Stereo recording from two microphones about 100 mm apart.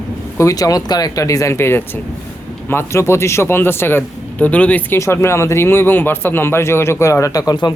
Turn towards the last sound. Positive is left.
turn(degrees=45)  # may be behind; listen again after turning